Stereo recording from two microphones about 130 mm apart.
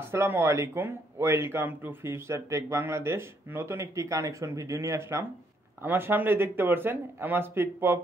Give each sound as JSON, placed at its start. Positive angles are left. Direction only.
{"t": 0.1, "sound": "speech", "side_deg": -20}